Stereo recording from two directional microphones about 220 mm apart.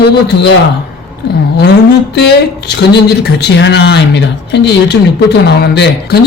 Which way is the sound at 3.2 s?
50° left (ahead or behind).